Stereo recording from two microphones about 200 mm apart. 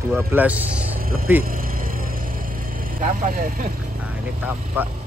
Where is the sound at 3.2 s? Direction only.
45° right (ahead or behind).